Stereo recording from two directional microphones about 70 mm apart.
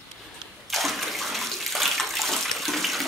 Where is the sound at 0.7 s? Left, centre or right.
Centre.